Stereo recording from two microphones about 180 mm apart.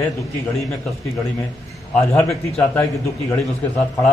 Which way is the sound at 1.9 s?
15° left (ahead or behind).